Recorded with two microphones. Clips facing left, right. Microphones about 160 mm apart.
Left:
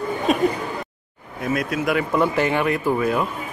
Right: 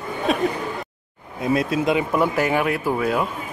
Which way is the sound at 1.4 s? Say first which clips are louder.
Right 3 dB; 25° right (ahead or behind).